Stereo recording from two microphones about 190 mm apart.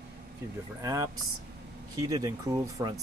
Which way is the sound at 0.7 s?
20° right (ahead or behind).